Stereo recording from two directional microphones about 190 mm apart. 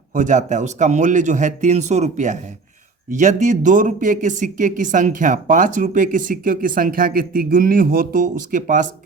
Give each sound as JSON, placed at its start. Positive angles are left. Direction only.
{"t": 0.1, "sound": "speech", "side_deg": -40}